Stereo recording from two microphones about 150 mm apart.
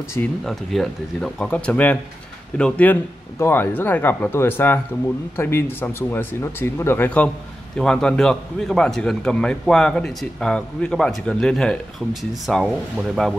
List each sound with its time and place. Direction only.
0.2 s speech: 15° left (ahead or behind)
0.5 s a man's voice: centre (ahead or behind)